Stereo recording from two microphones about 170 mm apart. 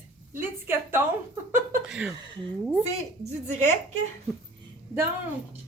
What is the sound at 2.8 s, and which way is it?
Speech, 40° right (ahead or behind).